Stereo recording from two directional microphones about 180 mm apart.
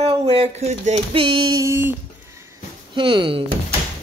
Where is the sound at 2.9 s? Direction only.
25° right (ahead or behind).